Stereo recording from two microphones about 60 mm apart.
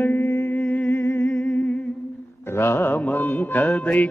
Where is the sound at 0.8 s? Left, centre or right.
Left.